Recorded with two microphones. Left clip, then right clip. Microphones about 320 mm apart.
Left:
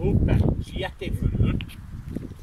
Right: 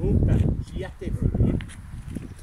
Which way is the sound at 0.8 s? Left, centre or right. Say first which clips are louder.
Left 2 dB; left.